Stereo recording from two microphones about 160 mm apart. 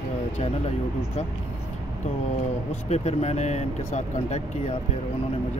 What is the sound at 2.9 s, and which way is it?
Speech, 45° left (ahead or behind).